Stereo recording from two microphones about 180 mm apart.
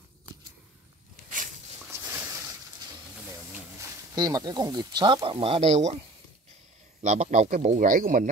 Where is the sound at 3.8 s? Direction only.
20° right (ahead or behind); by 5.9 s 35° right (ahead or behind).